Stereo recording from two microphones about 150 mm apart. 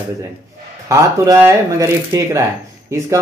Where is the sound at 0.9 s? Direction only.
20° right (ahead or behind).